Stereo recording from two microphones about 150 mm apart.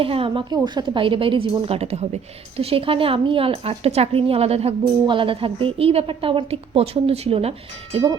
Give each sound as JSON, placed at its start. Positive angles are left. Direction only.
{"t": 0.0, "sound": "a woman's voice", "side_deg": -35}